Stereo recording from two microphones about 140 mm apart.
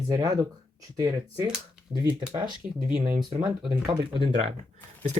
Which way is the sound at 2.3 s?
35° right (ahead or behind).